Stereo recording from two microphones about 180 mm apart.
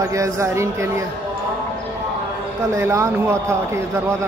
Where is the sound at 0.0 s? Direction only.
15° right (ahead or behind).